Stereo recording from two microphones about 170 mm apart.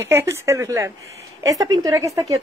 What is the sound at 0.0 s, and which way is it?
A woman's voice, 15° right (ahead or behind).